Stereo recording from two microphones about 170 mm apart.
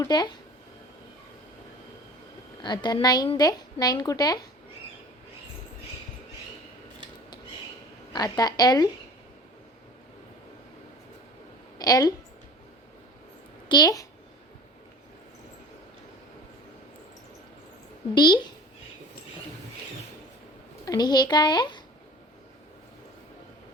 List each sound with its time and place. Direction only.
0.0 s a woman's voice: 25° left (ahead or behind)
2.6 s a woman's voice: 25° left (ahead or behind)
8.1 s a woman's voice: 20° left (ahead or behind)
11.8 s a woman's voice: 20° left (ahead or behind)
13.7 s a child's voice: 25° left (ahead or behind)
18.1 s a woman's voice: 25° left (ahead or behind)
20.8 s a woman's voice: 20° left (ahead or behind)